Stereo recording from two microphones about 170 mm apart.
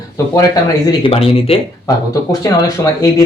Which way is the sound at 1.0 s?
35° left (ahead or behind).